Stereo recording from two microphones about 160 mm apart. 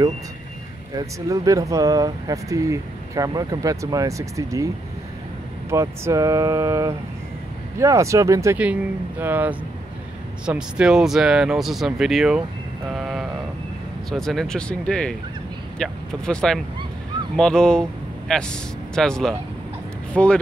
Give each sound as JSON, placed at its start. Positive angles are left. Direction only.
{"t": 0.9, "sound": "speech", "side_deg": -20}
{"t": 5.7, "sound": "speech", "side_deg": -15}